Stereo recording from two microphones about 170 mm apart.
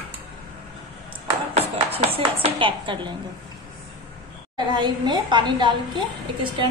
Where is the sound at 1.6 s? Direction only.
35° right (ahead or behind).